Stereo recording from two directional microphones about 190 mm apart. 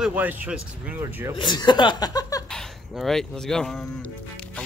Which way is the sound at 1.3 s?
25° left (ahead or behind).